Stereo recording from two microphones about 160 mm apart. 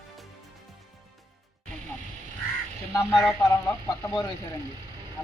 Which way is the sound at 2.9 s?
15° left (ahead or behind).